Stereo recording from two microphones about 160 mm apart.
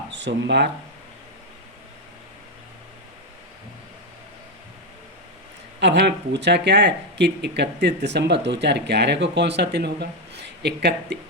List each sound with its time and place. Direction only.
0.1 s speech: 90° right
5.8 s speech: 90° right